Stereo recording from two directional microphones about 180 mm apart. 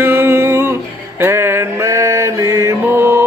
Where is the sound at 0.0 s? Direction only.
10° right (ahead or behind).